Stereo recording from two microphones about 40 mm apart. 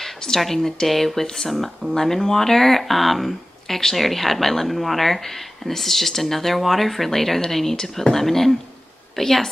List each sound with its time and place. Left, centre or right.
0.0 s speech: centre